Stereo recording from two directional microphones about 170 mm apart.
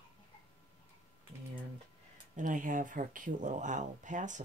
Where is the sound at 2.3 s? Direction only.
50° right (ahead or behind).